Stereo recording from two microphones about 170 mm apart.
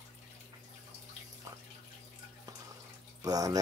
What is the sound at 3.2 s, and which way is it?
Speech, 20° right (ahead or behind).